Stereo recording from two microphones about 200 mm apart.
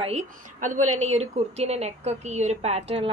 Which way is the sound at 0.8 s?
90° right.